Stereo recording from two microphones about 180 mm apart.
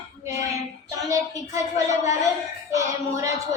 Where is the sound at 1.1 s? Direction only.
20° right (ahead or behind).